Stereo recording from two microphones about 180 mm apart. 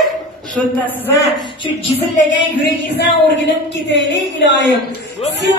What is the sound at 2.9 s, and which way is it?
A woman's voice, 75° left (ahead or behind).